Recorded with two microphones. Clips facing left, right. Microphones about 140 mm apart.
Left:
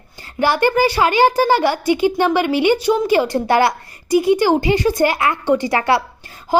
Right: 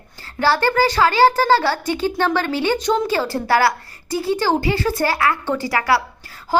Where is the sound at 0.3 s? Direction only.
15° left (ahead or behind).